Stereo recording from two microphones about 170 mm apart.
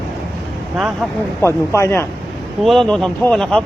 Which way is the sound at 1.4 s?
15° left (ahead or behind).